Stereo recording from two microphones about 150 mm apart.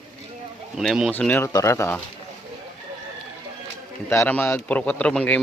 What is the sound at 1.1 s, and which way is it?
Speech, 10° left (ahead or behind).